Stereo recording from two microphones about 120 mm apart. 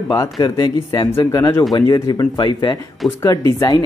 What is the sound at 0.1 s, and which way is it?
A man's voice, 30° left (ahead or behind).